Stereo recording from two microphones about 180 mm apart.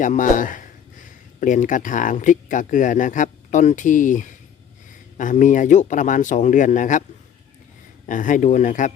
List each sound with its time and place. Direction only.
0.0 s speech: 45° left (ahead or behind)
8.0 s speech: 45° left (ahead or behind)